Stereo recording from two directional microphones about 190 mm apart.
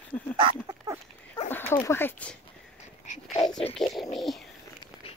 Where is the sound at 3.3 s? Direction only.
20° left (ahead or behind).